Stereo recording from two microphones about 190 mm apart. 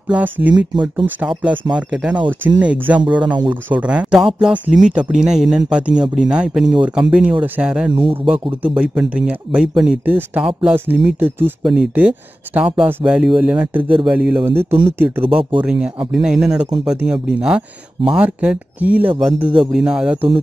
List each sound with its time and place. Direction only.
0.1 s speech: 10° right (ahead or behind)
7.9 s speech: 25° right (ahead or behind)
8.6 s speech: 5° right (ahead or behind)